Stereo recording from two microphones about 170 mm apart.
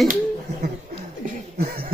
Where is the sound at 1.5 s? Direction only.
65° right (ahead or behind).